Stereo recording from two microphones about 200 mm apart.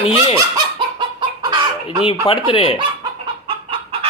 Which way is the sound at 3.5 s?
30° right (ahead or behind).